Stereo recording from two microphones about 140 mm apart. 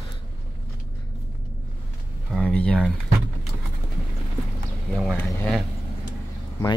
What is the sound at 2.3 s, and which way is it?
Speech, 5° left (ahead or behind).